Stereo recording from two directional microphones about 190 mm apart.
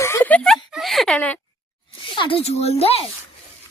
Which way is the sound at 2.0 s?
25° left (ahead or behind).